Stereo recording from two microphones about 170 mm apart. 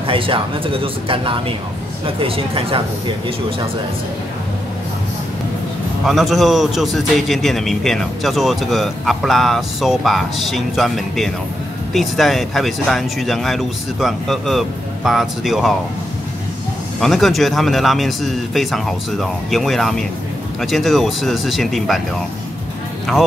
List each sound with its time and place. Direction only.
0.0 s speech: 30° right (ahead or behind)
6.0 s a man's voice: centre (ahead or behind)
17.0 s a man's voice: centre (ahead or behind)